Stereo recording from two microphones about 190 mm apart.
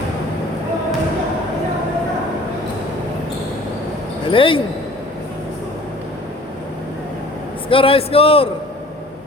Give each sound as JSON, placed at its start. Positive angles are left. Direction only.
{"t": 4.3, "sound": "a man's voice", "side_deg": 25}
{"t": 7.7, "sound": "a man's voice", "side_deg": 30}